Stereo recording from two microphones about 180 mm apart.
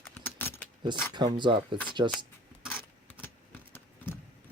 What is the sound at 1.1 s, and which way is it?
Speech, 25° right (ahead or behind).